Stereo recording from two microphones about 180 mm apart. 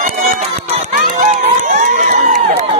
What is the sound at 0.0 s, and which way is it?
Run, 35° right (ahead or behind).